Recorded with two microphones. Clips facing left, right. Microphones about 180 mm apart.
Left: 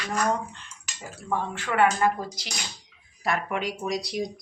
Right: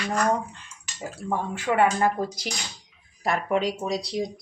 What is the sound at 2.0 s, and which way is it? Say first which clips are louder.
Speech: right 1 dB; 45° right (ahead or behind).